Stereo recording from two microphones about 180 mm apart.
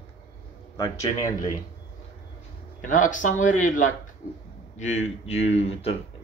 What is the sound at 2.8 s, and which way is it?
Speech, 45° left (ahead or behind).